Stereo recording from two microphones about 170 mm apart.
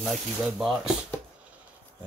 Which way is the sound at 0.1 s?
5° right (ahead or behind).